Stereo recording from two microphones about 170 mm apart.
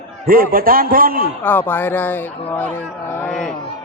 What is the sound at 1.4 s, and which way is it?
Speech, 10° left (ahead or behind).